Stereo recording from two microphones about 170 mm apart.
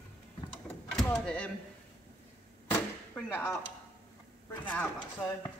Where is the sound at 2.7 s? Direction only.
15° left (ahead or behind).